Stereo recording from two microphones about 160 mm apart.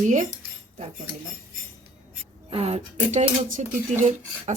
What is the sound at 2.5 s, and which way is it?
Speech, 40° right (ahead or behind).